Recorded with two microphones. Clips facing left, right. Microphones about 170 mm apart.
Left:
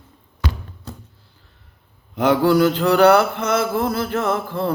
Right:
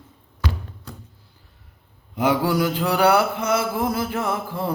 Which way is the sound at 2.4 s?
10° right (ahead or behind).